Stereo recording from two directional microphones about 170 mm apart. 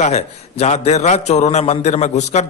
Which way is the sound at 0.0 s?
40° left (ahead or behind).